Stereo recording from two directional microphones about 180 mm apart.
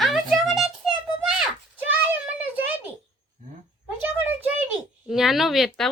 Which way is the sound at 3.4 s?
45° right (ahead or behind).